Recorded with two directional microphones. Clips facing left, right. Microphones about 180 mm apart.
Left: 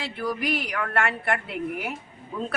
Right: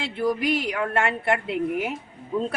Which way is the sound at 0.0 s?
25° right (ahead or behind).